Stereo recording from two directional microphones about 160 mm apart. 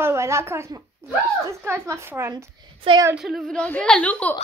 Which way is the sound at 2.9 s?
35° right (ahead or behind).